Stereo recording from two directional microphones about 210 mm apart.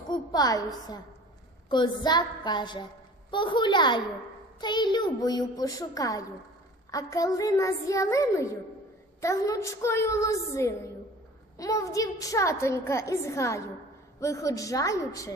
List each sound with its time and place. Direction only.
0.1 s a woman's voice: 20° left (ahead or behind)